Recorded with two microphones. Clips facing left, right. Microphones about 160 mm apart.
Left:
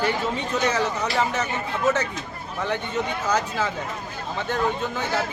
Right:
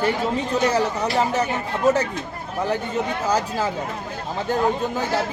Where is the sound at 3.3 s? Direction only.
35° right (ahead or behind).